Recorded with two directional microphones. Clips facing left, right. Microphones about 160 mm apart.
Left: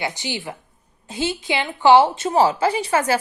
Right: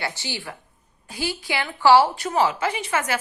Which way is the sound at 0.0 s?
15° left (ahead or behind).